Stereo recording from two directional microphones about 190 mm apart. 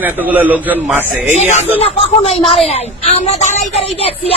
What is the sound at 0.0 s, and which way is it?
A man's voice, 10° right (ahead or behind).